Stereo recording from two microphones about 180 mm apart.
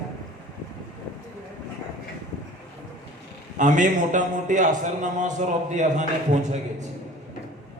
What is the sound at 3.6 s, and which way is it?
A man's voice, 45° right (ahead or behind).